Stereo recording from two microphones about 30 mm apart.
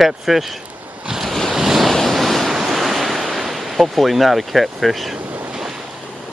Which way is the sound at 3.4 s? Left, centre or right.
Centre.